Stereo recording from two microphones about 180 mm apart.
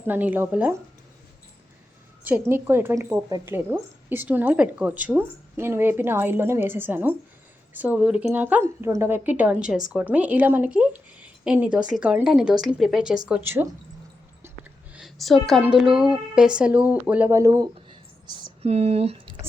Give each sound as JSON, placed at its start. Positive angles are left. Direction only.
{"t": 0.1, "sound": "a woman's voice", "side_deg": -10}
{"t": 2.2, "sound": "a woman's voice", "side_deg": -10}
{"t": 14.4, "sound": "a sound", "side_deg": -5}
{"t": 15.6, "sound": "speech", "side_deg": -5}
{"t": 18.7, "sound": "speech", "side_deg": -35}